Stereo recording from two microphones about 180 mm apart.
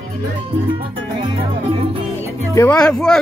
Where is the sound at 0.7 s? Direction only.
25° right (ahead or behind).